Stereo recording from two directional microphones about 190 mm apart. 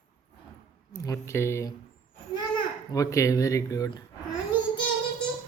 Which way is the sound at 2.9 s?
15° left (ahead or behind).